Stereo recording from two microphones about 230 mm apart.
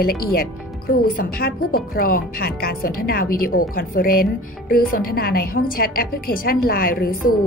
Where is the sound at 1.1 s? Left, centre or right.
Left.